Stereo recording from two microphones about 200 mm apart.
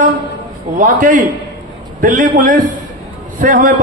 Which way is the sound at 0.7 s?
40° right (ahead or behind).